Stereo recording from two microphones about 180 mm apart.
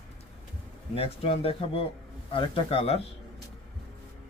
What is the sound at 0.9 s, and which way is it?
A man's voice, 35° left (ahead or behind).